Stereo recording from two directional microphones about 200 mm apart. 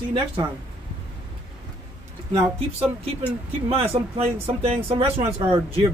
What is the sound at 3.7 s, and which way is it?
A man's voice, 30° right (ahead or behind).